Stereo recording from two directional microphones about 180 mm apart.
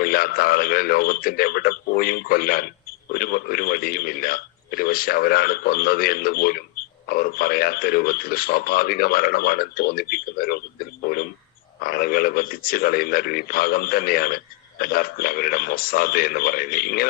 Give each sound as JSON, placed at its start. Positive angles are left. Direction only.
{"t": 0.0, "sound": "speech", "side_deg": 55}